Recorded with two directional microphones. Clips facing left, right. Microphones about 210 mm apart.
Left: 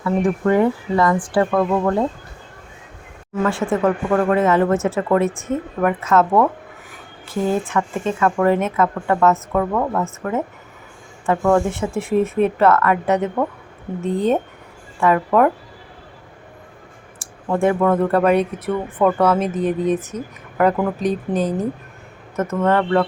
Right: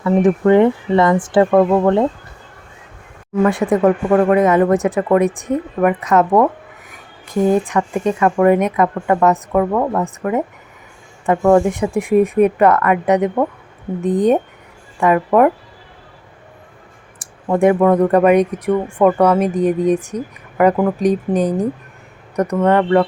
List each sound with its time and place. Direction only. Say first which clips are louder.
0.0 s speech: right 5 dB; 20° right (ahead or behind)
3.4 s speech: right 5 dB; 15° right (ahead or behind)
17.5 s speech: right 4 dB; 20° right (ahead or behind)